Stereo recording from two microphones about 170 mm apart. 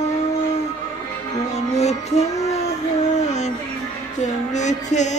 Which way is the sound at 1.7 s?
40° left (ahead or behind).